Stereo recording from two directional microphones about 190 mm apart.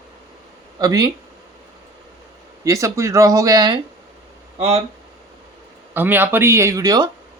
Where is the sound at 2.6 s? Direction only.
15° right (ahead or behind).